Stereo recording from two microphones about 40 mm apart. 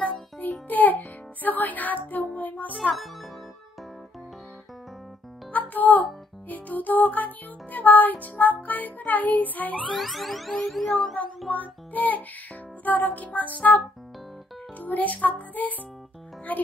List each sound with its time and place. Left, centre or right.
0.4 s music: left
5.5 s music: left
9.9 s music: centre
11.5 s music: left
16.5 s speech: left